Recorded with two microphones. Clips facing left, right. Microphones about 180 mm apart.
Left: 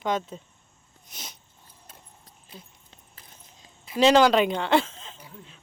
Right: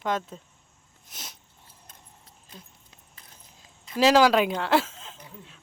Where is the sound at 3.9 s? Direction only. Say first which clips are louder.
Left 1 dB; 5° right (ahead or behind).